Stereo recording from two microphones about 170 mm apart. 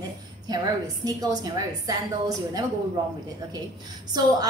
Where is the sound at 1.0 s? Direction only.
20° right (ahead or behind).